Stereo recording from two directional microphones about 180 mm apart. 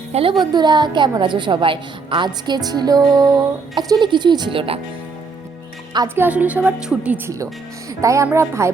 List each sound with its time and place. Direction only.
0.1 s a woman's voice: 30° right (ahead or behind)
6.1 s a woman's voice: 10° right (ahead or behind)